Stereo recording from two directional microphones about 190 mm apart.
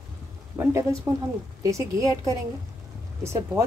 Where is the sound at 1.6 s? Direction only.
15° right (ahead or behind).